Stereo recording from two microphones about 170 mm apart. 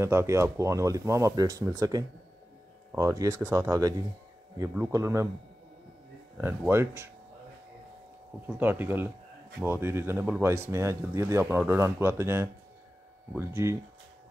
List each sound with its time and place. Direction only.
0.0 s speech: 15° right (ahead or behind)
6.3 s speech: 15° right (ahead or behind)
8.5 s speech: 10° right (ahead or behind)